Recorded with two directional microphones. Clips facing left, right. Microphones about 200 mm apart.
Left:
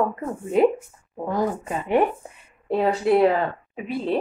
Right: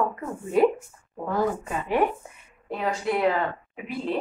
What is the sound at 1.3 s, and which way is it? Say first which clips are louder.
A woman's voice: left 1 dB; 20° left (ahead or behind).